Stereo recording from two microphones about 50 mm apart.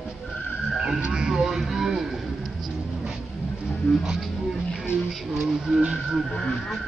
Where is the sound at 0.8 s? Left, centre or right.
Right.